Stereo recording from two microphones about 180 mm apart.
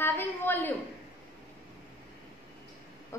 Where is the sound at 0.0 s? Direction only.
10° left (ahead or behind).